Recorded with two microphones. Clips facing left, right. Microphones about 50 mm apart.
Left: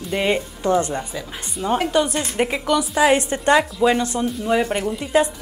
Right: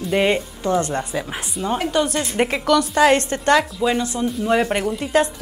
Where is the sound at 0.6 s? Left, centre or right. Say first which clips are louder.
Left 1 dB; left.